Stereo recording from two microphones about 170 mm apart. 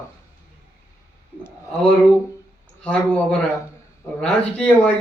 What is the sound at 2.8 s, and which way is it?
A man's voice, 5° left (ahead or behind).